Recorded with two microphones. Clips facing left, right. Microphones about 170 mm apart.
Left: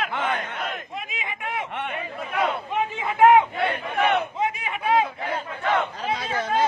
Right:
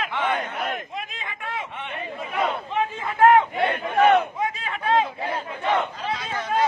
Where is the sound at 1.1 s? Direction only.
15° left (ahead or behind).